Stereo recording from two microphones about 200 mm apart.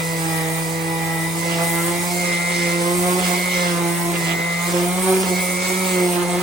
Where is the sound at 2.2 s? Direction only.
55° right (ahead or behind).